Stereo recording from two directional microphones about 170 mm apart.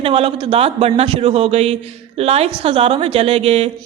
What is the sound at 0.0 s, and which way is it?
A woman's voice, 35° right (ahead or behind).